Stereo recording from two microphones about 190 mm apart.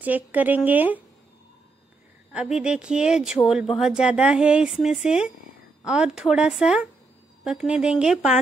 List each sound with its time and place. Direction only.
0.0 s a woman's voice: 10° right (ahead or behind)
2.3 s speech: 5° right (ahead or behind)